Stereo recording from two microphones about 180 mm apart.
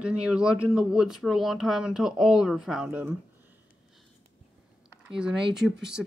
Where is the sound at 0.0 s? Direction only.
5° right (ahead or behind).